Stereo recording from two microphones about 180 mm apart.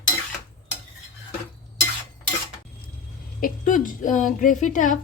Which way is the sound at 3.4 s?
50° left (ahead or behind).